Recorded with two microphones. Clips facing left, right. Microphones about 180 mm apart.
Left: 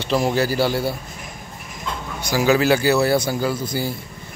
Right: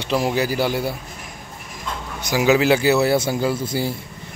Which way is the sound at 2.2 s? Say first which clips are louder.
Right 1 dB; 20° right (ahead or behind).